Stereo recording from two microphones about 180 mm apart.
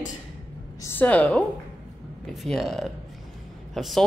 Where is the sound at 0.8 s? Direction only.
10° left (ahead or behind).